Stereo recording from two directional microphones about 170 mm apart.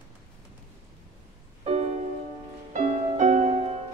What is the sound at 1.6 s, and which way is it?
Music, 40° right (ahead or behind).